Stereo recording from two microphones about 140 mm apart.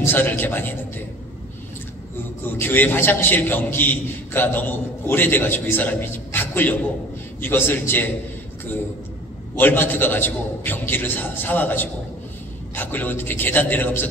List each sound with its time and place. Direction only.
0.0 s a man's voice: 15° left (ahead or behind)
2.5 s a man's voice: 15° left (ahead or behind)
9.6 s a man's voice: 15° left (ahead or behind)